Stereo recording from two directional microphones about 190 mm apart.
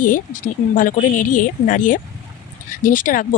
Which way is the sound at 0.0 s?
45° left (ahead or behind).